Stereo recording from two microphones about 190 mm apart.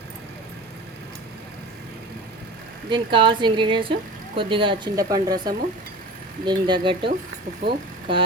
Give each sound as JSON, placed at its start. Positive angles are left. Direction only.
{"t": 2.9, "sound": "speech", "side_deg": -25}
{"t": 8.1, "sound": "speech", "side_deg": -25}